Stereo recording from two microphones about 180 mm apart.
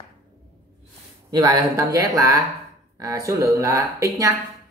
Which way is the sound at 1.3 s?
20° right (ahead or behind).